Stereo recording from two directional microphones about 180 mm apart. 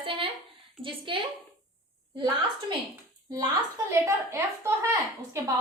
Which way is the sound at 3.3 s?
20° right (ahead or behind).